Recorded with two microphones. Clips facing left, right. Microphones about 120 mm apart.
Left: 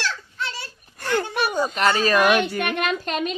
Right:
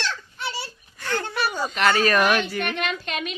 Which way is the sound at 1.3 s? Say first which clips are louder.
Left 2 dB; 50° left (ahead or behind).